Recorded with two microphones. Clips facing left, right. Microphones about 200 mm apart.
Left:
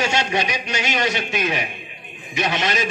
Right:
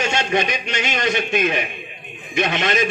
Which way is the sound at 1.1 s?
55° right (ahead or behind).